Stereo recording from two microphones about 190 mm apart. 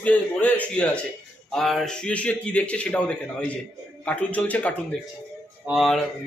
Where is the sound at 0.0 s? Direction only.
10° left (ahead or behind).